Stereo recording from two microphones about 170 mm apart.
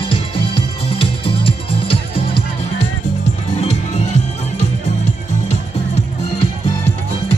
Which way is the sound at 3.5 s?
40° left (ahead or behind).